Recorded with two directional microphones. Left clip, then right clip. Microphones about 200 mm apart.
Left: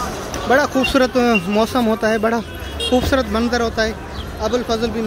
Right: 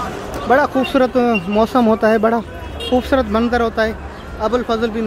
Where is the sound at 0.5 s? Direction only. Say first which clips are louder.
Right 1 dB; 5° right (ahead or behind).